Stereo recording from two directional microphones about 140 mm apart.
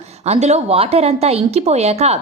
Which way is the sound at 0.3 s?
50° right (ahead or behind).